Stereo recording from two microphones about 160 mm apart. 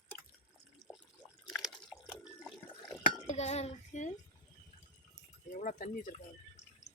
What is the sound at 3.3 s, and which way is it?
Child singing, 45° left (ahead or behind).